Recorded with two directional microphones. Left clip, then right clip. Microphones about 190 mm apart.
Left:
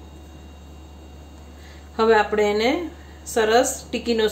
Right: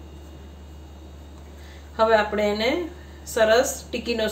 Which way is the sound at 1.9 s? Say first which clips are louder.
Left 2 dB; 30° left (ahead or behind).